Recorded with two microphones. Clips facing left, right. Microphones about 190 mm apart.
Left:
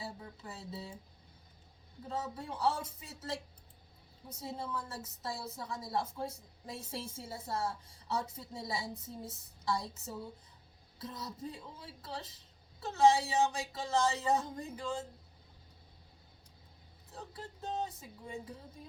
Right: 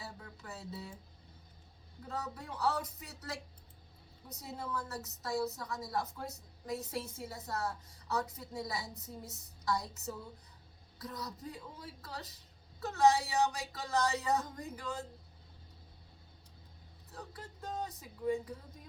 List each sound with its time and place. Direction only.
0.0 s music: 25° left (ahead or behind)
2.0 s a woman's voice: 25° left (ahead or behind)
10.9 s a woman's voice: 25° left (ahead or behind)
17.2 s a woman's voice: 25° left (ahead or behind)